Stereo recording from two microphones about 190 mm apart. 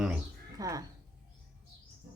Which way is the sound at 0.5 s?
20° right (ahead or behind).